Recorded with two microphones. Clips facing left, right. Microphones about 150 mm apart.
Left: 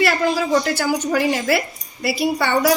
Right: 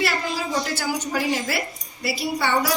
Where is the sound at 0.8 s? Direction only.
60° left (ahead or behind).